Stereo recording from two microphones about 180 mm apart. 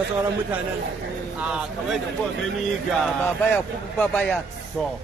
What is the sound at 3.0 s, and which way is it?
Speech, 10° left (ahead or behind).